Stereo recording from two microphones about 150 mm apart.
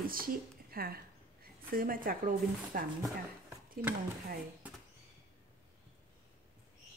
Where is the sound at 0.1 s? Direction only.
75° right (ahead or behind); by 0.9 s 90° right.